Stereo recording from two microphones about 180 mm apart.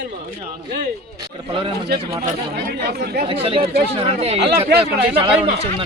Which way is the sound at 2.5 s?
60° right (ahead or behind).